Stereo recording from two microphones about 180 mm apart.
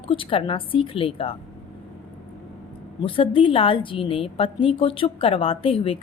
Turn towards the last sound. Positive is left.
turn(degrees=30)  # may be behind; listen again after turning